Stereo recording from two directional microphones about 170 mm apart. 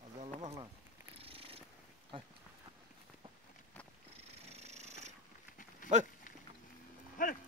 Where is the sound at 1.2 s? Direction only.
35° right (ahead or behind).